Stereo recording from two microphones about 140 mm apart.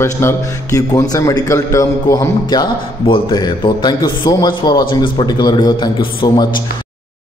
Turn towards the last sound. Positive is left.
turn(degrees=30)  # may be behind; listen again after turning